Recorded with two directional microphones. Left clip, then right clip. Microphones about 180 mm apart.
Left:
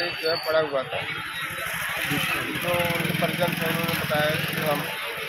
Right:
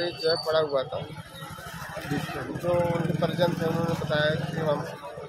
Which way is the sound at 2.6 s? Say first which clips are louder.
Right 1 dB; 45° right (ahead or behind).